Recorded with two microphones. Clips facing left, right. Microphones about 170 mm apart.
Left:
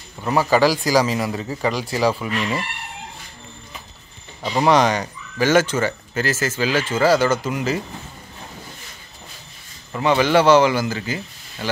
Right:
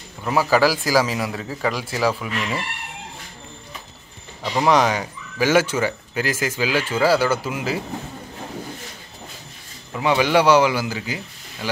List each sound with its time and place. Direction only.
0.2 s a man's voice: centre (ahead or behind)
4.4 s speech: centre (ahead or behind)
9.9 s speech: 10° right (ahead or behind)